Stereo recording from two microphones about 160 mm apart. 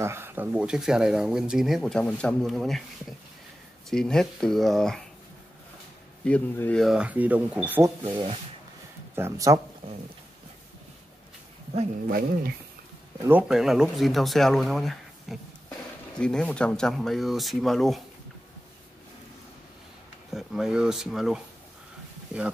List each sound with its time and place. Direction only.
0.0 s speech: 15° right (ahead or behind); by 5.0 s 5° left (ahead or behind)
6.2 s a man's voice: 10° left (ahead or behind)
6.8 s speech: 5° right (ahead or behind)
12.1 s speech: 65° right (ahead or behind)
13.2 s speech: 15° right (ahead or behind)
13.5 s speech: centre (ahead or behind)
20.3 s speech: 5° right (ahead or behind)